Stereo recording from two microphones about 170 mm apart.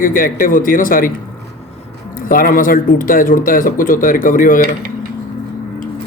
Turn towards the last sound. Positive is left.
turn(degrees=55)  # may be behind; listen again after turning